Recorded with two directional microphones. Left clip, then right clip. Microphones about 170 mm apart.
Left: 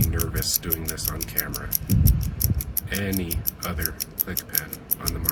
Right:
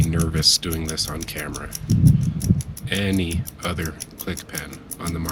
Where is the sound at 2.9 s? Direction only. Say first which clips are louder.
Right 5 dB; 25° right (ahead or behind).